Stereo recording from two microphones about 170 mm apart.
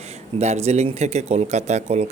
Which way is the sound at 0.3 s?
40° right (ahead or behind).